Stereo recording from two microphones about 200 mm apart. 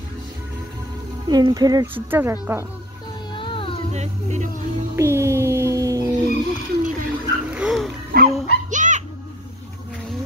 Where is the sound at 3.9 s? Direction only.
35° right (ahead or behind).